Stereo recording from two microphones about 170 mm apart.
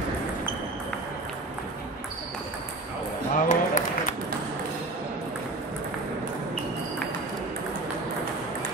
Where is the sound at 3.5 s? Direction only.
50° left (ahead or behind).